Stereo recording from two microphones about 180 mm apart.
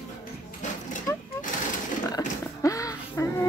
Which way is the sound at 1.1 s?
20° left (ahead or behind).